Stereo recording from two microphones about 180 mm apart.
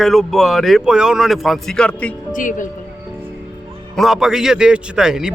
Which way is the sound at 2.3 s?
45° left (ahead or behind).